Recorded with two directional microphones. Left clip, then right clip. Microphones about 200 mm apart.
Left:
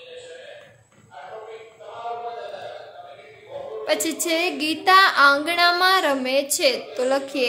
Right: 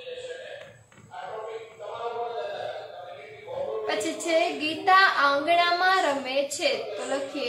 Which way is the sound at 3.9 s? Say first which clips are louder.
Left 7 dB; 60° left (ahead or behind).